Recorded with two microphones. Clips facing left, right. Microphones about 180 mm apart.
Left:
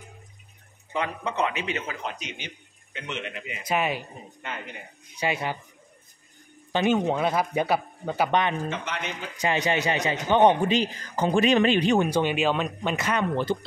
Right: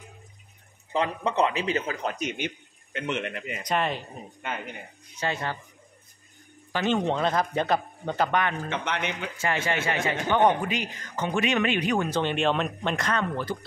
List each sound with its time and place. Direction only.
0.9 s a man's voice: 35° right (ahead or behind); by 3.6 s 50° right (ahead or behind)
3.6 s a man's voice: 5° left (ahead or behind)
5.2 s a man's voice: 10° left (ahead or behind)
6.7 s a man's voice: 15° left (ahead or behind)
8.3 s a man's voice: 20° left (ahead or behind)
8.6 s speech: 60° right (ahead or behind)
9.4 s a man's voice: 20° left (ahead or behind)
12.1 s speech: 10° left (ahead or behind)
13.4 s a man's voice: 25° left (ahead or behind)